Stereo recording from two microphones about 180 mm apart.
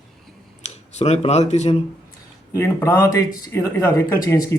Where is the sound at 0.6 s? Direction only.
40° left (ahead or behind).